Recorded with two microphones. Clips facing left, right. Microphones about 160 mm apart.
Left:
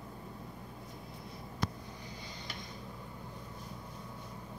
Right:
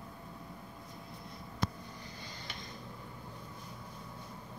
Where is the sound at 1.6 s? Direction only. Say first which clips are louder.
Right 1 dB; 25° right (ahead or behind).